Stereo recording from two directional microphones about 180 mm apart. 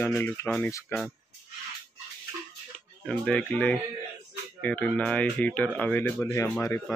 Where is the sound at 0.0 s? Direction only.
10° left (ahead or behind).